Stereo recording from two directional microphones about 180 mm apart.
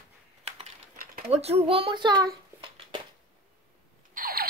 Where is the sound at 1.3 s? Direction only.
35° right (ahead or behind).